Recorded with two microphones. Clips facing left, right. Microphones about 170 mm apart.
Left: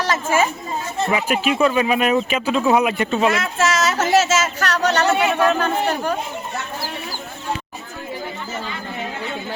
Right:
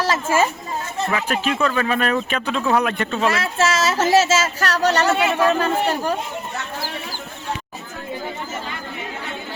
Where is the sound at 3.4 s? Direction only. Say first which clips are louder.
Even; 30° right (ahead or behind).